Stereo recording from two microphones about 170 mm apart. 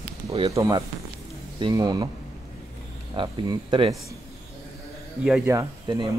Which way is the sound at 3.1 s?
25° right (ahead or behind).